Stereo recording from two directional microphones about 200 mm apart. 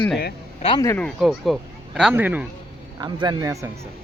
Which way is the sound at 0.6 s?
25° left (ahead or behind).